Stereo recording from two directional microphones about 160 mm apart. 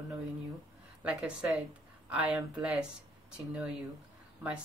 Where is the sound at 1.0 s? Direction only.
5° right (ahead or behind).